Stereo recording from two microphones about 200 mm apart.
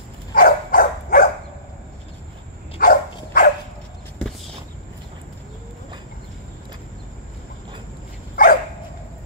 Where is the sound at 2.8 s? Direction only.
45° left (ahead or behind).